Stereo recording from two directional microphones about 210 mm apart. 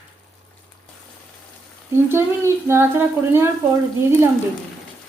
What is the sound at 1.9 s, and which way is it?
Speech, 10° right (ahead or behind).